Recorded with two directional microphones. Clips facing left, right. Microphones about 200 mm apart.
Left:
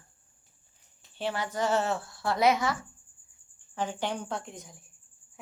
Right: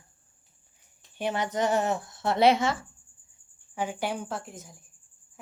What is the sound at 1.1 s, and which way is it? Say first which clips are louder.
Speech: right 3 dB; 20° right (ahead or behind).